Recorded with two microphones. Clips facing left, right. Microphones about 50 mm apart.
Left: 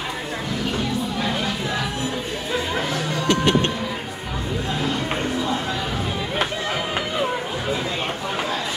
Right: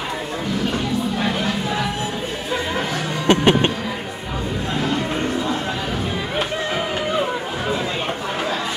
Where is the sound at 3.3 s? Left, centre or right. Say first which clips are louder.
Right 4 dB; right.